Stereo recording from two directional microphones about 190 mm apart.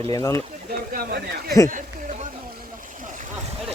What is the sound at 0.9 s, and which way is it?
Speech, 55° right (ahead or behind).